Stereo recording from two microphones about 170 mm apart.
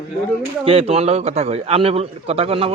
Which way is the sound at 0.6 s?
35° right (ahead or behind).